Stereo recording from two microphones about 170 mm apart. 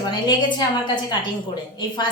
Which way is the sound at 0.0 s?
25° left (ahead or behind).